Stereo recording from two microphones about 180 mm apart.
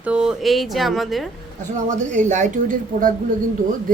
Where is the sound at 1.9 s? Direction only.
45° right (ahead or behind).